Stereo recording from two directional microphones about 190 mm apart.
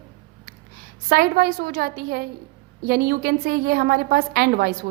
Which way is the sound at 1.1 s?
55° right (ahead or behind).